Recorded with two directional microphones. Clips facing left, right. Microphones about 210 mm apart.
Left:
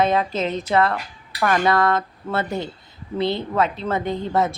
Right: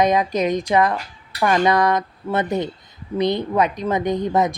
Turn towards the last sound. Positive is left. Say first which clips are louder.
# right 3 dB
turn(degrees=-15)  # may be behind; listen again after turning